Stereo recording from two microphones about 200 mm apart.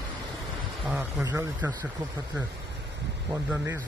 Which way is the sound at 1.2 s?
15° right (ahead or behind).